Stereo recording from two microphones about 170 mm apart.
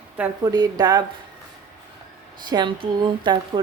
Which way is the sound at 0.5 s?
25° right (ahead or behind).